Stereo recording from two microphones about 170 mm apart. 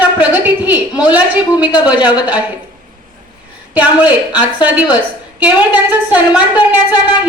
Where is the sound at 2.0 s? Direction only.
25° left (ahead or behind).